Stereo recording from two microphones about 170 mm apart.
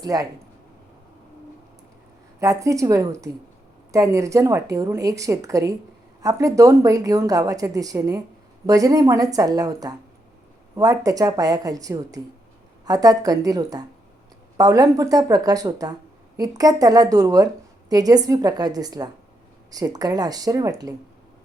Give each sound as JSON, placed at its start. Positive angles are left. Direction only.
{"t": 0.0, "sound": "a woman's voice", "side_deg": -20}
{"t": 2.4, "sound": "a woman's voice", "side_deg": -20}